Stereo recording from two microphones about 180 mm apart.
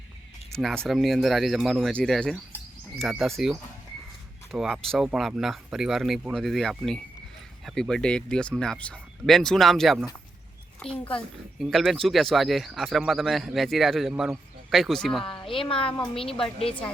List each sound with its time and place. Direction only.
0.5 s speech: 5° left (ahead or behind)
11.6 s speech: centre (ahead or behind)
15.2 s a woman's voice: 30° left (ahead or behind)